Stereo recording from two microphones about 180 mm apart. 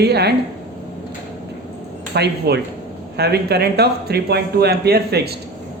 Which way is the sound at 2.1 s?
65° right (ahead or behind).